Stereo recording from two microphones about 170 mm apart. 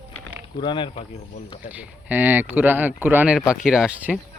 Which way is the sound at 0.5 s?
30° left (ahead or behind).